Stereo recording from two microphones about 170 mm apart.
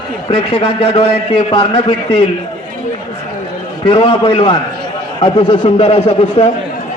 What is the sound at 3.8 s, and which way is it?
A man's voice, 30° left (ahead or behind).